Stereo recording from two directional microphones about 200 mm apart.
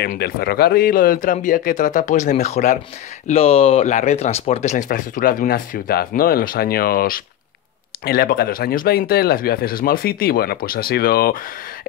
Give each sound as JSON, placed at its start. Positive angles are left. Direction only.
{"t": 0.0, "sound": "speech", "side_deg": 50}